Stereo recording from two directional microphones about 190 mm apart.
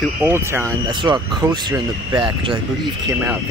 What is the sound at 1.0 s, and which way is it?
Speech, 25° right (ahead or behind).